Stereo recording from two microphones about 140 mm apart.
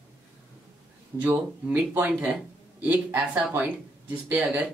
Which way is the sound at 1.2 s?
10° right (ahead or behind).